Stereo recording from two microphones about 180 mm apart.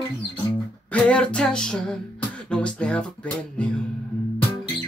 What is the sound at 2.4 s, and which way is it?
Music, 5° left (ahead or behind).